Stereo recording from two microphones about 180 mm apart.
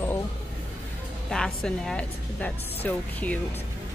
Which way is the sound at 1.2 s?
5° left (ahead or behind).